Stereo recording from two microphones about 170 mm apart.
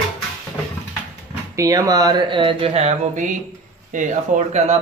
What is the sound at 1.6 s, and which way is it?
Speech, 20° right (ahead or behind).